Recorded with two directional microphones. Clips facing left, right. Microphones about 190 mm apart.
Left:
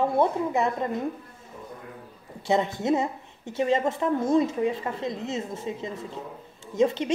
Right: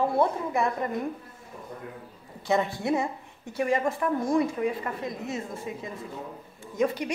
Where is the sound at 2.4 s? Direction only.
20° left (ahead or behind).